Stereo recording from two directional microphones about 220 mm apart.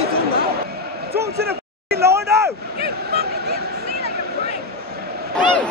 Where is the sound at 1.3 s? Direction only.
45° right (ahead or behind).